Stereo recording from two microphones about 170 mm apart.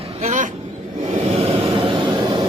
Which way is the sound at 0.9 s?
45° right (ahead or behind).